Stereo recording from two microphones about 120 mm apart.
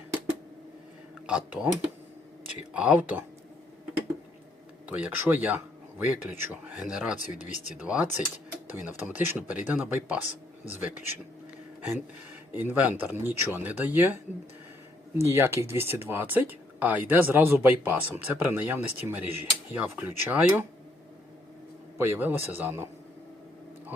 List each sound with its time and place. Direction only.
1.3 s speech: 10° right (ahead or behind)
4.9 s speech: 15° right (ahead or behind)
7.2 s speech: 90° left
7.8 s speech: 10° right (ahead or behind)
12.5 s speech: 15° right (ahead or behind)
15.2 s speech: 20° right (ahead or behind)
21.9 s a man's voice: 20° right (ahead or behind)